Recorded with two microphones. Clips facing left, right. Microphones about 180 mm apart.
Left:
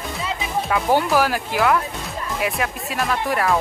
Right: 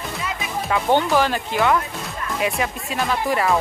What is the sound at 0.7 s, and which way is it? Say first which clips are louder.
Speech: right 1 dB; 5° left (ahead or behind).